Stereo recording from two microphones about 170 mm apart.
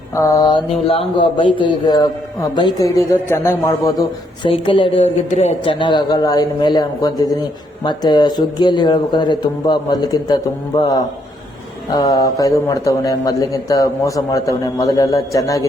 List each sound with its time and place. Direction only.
0.2 s speech: 20° left (ahead or behind)
4.4 s speech: 30° left (ahead or behind)
5.8 s speech: 25° left (ahead or behind)
11.9 s speech: 20° left (ahead or behind)